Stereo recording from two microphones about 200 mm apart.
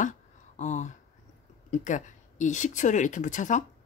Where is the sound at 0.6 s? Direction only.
35° left (ahead or behind).